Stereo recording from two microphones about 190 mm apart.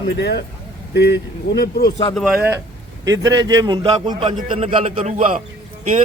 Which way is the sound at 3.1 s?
20° right (ahead or behind).